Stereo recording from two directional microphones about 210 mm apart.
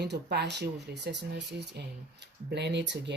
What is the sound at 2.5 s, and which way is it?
Speech, 55° right (ahead or behind).